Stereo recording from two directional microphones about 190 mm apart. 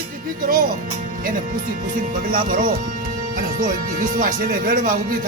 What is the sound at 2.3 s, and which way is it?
Speech, 50° right (ahead or behind).